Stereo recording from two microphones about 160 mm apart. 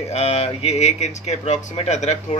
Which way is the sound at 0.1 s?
40° left (ahead or behind).